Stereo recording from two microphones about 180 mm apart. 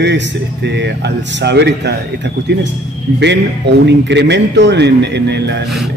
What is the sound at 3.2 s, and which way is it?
Speech, 70° right (ahead or behind).